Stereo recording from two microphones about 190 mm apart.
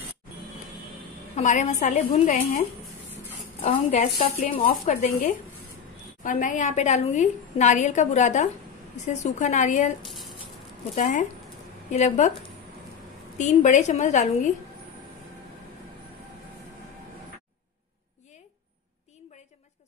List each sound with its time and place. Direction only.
1.3 s a woman's voice: 40° left (ahead or behind)
3.6 s a woman's voice: 35° left (ahead or behind)
6.2 s a woman's voice: 40° left (ahead or behind)
10.0 s a sound: centre (ahead or behind)
11.0 s a woman's voice: 40° left (ahead or behind)
13.4 s a woman's voice: 40° left (ahead or behind)